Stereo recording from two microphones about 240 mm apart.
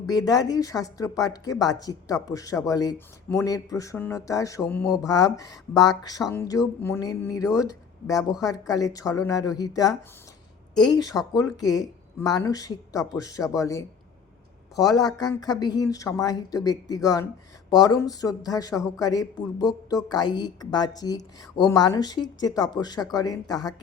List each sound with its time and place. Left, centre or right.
0.1 s speech: centre